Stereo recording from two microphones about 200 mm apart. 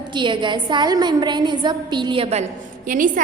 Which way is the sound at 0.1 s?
25° right (ahead or behind).